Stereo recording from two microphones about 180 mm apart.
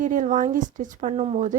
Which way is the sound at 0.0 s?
45° right (ahead or behind).